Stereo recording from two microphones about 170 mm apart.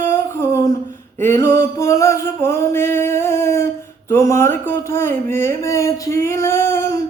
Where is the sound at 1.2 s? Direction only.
15° left (ahead or behind).